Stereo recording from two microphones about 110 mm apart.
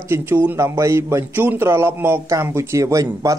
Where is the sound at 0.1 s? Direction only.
25° right (ahead or behind).